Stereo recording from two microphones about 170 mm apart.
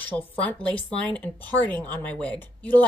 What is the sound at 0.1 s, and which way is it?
A woman's voice, 10° left (ahead or behind).